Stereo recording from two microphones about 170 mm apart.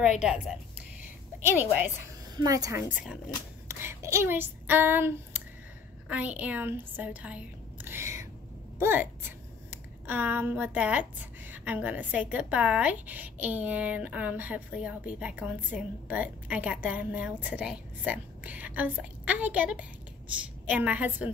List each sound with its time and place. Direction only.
0.2 s speech: 5° right (ahead or behind)
1.6 s a woman's voice: 10° right (ahead or behind)